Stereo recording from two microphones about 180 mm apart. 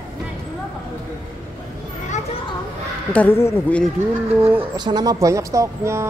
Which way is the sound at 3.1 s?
10° left (ahead or behind).